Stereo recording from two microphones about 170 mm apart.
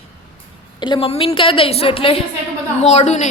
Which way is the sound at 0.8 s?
30° left (ahead or behind).